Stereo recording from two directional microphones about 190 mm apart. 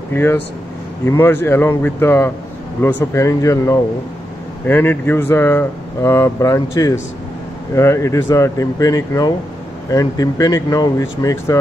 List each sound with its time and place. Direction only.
0.1 s speech: 10° left (ahead or behind)